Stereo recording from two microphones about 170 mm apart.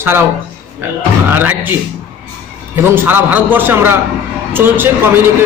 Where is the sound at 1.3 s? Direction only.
10° right (ahead or behind).